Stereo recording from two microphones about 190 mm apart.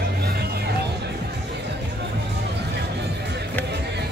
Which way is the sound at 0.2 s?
55° right (ahead or behind).